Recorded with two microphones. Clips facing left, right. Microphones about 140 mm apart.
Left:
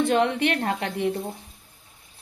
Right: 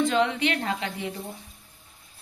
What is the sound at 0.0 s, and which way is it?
A woman's voice, 55° left (ahead or behind).